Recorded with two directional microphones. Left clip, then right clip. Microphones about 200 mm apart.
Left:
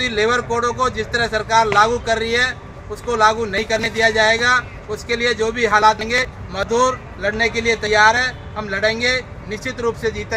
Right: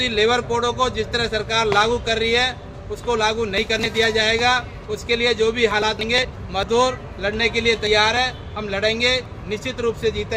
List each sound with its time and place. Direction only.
0.0 s a man's voice: 15° right (ahead or behind)